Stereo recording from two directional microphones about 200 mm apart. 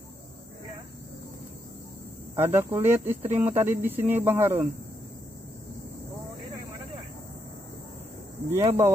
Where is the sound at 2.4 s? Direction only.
10° right (ahead or behind).